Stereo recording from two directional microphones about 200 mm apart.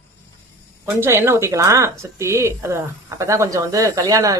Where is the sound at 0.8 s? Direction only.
10° right (ahead or behind).